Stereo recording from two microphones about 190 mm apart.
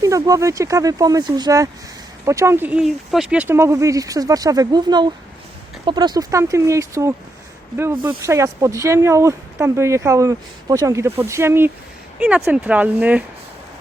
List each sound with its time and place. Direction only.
0.0 s speech: 15° right (ahead or behind)